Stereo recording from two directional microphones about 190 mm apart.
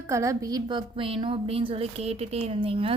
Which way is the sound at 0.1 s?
15° right (ahead or behind).